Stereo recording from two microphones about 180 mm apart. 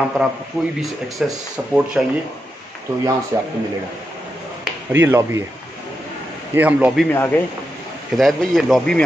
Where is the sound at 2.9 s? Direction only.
15° right (ahead or behind).